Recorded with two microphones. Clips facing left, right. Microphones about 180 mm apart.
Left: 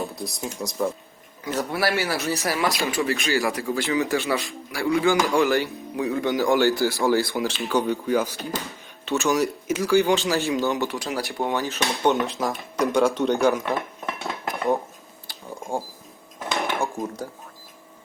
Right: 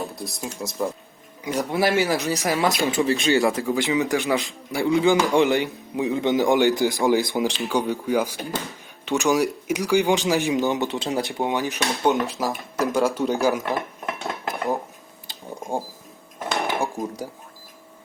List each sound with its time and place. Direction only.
0.2 s speech: centre (ahead or behind)
1.5 s speech: 15° right (ahead or behind)
11.9 s speech: 5° right (ahead or behind)
14.4 s cutlery: centre (ahead or behind)
15.3 s a sound: 20° right (ahead or behind)
16.9 s speech: 15° right (ahead or behind)